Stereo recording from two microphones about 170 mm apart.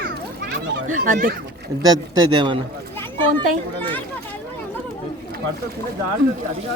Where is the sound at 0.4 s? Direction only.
60° right (ahead or behind).